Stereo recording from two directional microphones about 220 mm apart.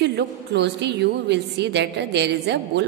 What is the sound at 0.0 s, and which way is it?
A woman's voice, 50° right (ahead or behind).